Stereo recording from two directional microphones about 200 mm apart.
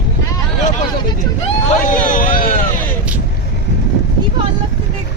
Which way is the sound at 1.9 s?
45° left (ahead or behind).